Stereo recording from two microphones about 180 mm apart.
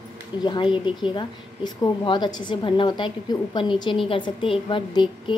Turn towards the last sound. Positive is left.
turn(degrees=25)  # may be behind; listen again after turning